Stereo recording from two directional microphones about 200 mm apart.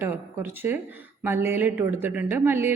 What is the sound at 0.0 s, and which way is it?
A woman's voice, 10° right (ahead or behind).